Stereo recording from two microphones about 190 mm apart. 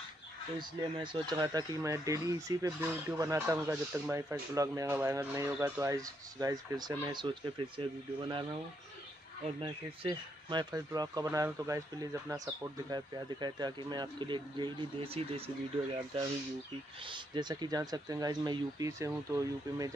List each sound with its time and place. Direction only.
0.6 s speech: 25° right (ahead or behind)
9.6 s speech: 25° right (ahead or behind)
17.0 s speech: 25° right (ahead or behind)